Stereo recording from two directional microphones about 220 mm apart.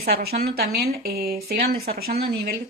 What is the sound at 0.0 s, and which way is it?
Speech, 45° right (ahead or behind).